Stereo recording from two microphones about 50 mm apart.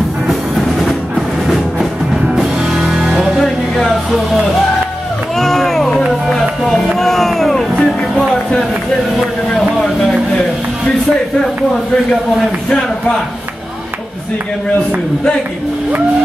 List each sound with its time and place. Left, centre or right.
0.3 s music: centre
2.3 s music: centre
3.4 s music: centre
5.4 s run: centre
6.6 s music: centre
7.8 s music: centre
12.6 s speech: centre